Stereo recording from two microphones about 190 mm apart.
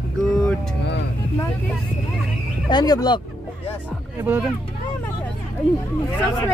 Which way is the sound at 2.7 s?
20° left (ahead or behind).